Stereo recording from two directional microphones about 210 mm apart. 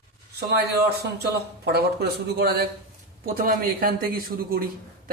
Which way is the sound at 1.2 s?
50° right (ahead or behind).